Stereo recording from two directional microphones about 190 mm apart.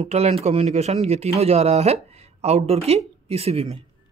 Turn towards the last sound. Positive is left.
turn(degrees=-30)  # may be behind; listen again after turning